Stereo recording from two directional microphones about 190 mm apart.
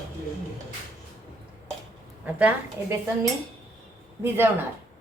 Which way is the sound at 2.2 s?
10° right (ahead or behind).